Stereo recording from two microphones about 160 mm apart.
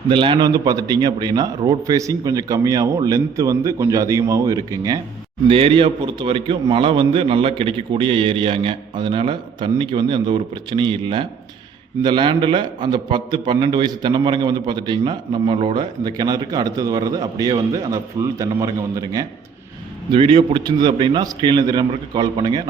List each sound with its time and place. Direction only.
0.1 s a man's voice: 30° right (ahead or behind)
5.5 s a man's voice: 35° right (ahead or behind)